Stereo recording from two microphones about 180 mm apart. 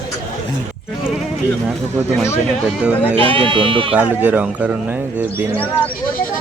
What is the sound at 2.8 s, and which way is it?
Speech, 10° right (ahead or behind).